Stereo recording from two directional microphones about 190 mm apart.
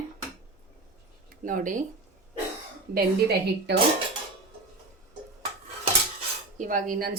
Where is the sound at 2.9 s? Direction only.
55° right (ahead or behind).